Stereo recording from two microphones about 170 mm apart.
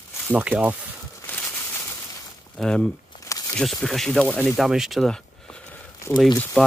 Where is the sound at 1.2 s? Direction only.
10° left (ahead or behind).